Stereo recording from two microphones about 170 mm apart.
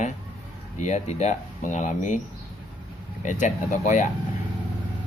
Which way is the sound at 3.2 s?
45° left (ahead or behind).